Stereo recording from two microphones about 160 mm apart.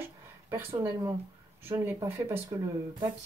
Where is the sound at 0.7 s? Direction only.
25° right (ahead or behind).